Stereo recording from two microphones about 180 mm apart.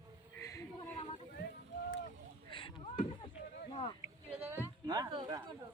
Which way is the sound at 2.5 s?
30° left (ahead or behind).